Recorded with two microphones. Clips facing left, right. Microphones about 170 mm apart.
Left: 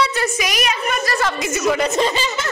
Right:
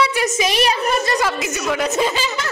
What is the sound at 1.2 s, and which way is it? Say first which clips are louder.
A woman's voice: even; 5° right (ahead or behind).